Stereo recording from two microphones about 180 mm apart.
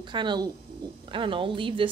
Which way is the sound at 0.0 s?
25° right (ahead or behind).